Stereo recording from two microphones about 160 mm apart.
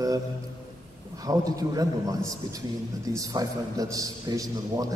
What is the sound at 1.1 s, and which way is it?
A man's voice, 20° right (ahead or behind).